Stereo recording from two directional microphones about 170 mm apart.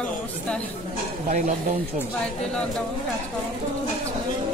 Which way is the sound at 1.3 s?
50° right (ahead or behind).